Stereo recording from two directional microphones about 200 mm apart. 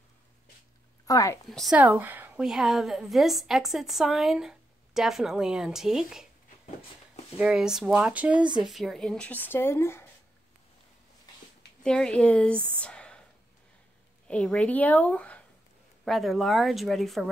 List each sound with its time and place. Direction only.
1.0 s a woman's voice: 15° left (ahead or behind)
1.5 s a woman's voice: centre (ahead or behind)
7.3 s a woman's voice: 5° right (ahead or behind); by 10.0 s 10° left (ahead or behind)
11.8 s a woman's voice: 5° left (ahead or behind)
12.8 s a sound: 5° left (ahead or behind)
14.2 s a woman's voice: 5° left (ahead or behind)